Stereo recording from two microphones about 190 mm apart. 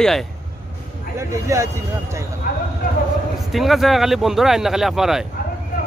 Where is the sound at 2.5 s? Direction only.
55° left (ahead or behind).